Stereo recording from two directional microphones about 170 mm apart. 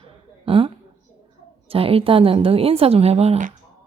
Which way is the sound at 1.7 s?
35° right (ahead or behind).